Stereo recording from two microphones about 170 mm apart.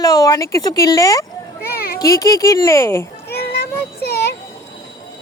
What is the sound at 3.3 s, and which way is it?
Child singing, 70° left (ahead or behind).